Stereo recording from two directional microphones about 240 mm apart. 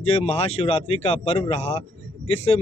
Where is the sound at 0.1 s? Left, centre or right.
Left.